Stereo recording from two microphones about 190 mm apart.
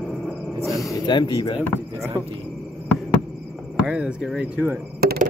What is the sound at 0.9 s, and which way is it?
Speech, 25° left (ahead or behind).